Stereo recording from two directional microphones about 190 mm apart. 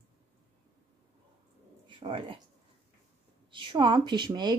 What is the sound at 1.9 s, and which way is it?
Speech, 25° right (ahead or behind).